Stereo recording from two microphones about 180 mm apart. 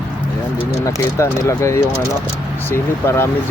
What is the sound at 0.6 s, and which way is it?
Speech, 15° left (ahead or behind).